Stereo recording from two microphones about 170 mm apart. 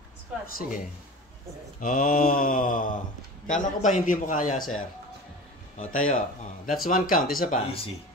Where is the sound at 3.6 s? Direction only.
45° left (ahead or behind).